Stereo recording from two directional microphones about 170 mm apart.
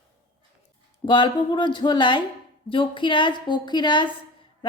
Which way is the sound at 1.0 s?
25° left (ahead or behind).